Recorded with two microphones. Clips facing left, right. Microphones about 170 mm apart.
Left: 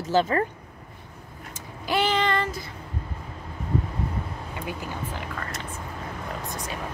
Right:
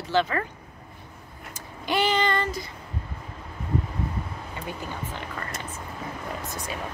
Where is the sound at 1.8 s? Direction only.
Centre (ahead or behind).